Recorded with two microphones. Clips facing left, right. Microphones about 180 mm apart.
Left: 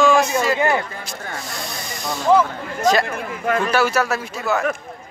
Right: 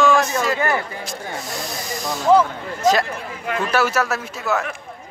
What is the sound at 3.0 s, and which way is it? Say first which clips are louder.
Speech: left 4 dB; 50° left (ahead or behind).